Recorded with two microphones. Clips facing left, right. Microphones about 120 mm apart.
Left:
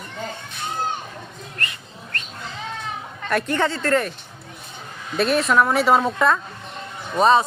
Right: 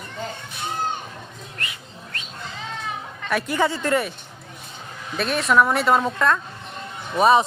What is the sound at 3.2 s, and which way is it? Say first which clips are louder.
Speech: left 1 dB; 5° right (ahead or behind).